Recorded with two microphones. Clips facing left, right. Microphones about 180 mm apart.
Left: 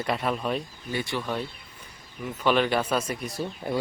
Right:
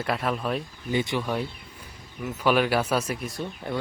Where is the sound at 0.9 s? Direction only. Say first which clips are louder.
Right 3 dB; 20° right (ahead or behind).